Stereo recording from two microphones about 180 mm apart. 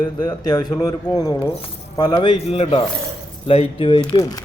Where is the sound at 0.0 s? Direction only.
20° left (ahead or behind).